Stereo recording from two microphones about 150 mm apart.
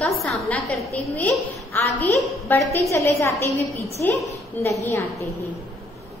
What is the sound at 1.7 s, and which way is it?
A woman's voice, 10° left (ahead or behind).